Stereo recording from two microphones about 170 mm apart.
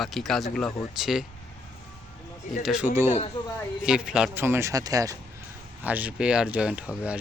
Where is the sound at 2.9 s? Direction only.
40° left (ahead or behind).